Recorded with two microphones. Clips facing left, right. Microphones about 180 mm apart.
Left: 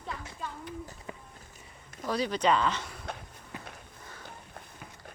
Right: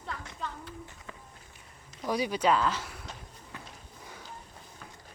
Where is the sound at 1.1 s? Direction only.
15° left (ahead or behind).